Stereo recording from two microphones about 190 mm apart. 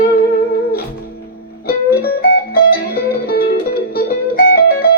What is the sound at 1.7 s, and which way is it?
Music, 55° left (ahead or behind).